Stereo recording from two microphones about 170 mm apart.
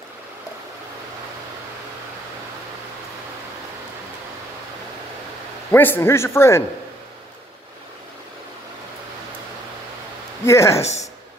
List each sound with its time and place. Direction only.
5.7 s a man's voice: 15° left (ahead or behind)
10.4 s a man's voice: 15° left (ahead or behind)
10.8 s a woman's voice: 40° left (ahead or behind)